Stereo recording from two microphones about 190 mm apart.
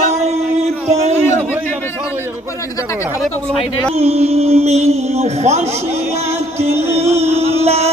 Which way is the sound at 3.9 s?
35° right (ahead or behind).